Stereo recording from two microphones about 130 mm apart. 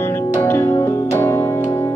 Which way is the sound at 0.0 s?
15° left (ahead or behind).